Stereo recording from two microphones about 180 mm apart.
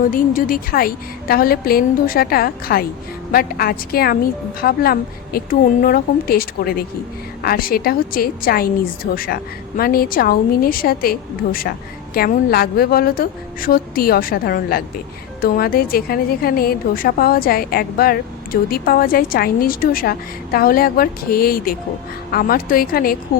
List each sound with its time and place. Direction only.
0.1 s a woman's voice: 50° left (ahead or behind)